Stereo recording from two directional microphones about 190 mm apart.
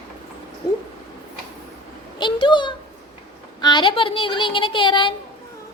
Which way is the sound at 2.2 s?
25° left (ahead or behind).